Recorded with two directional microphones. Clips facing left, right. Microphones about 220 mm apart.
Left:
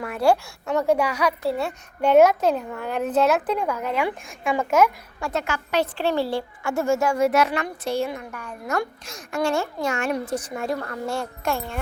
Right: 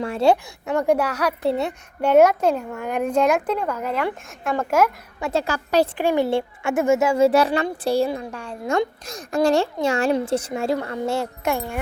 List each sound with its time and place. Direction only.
0.0 s a child's voice: 25° right (ahead or behind)
0.8 s a child's voice: 10° right (ahead or behind)
1.5 s a child's voice: 25° right (ahead or behind)
2.0 s a child's voice: 10° right (ahead or behind)
3.5 s speech: 10° left (ahead or behind)
3.8 s speech: 5° right (ahead or behind)
5.2 s a woman's voice: 30° right (ahead or behind)
5.8 s a child's voice: 10° right (ahead or behind)